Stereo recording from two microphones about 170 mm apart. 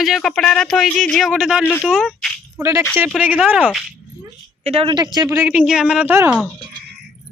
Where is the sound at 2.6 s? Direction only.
15° right (ahead or behind).